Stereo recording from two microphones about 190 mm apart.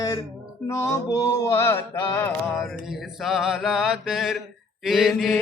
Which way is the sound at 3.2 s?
Centre (ahead or behind).